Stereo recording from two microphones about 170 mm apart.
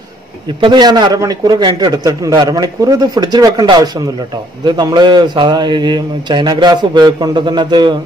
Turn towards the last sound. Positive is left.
turn(degrees=-25)  # may be behind; listen again after turning